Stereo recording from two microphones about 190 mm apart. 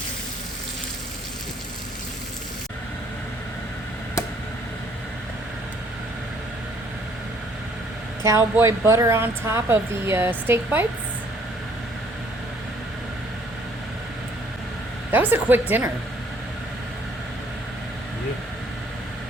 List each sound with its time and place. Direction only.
8.2 s speech: 15° right (ahead or behind)
15.1 s speech: 10° right (ahead or behind)